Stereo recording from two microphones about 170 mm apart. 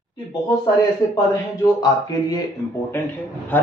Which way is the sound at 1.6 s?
25° left (ahead or behind).